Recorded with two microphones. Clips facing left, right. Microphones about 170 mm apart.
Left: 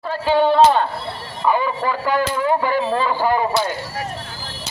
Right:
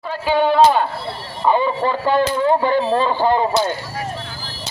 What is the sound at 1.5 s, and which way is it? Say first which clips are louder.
Speech: right 2 dB; 25° right (ahead or behind).